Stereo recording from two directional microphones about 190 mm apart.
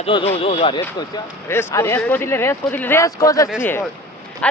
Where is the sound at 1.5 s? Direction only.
10° left (ahead or behind).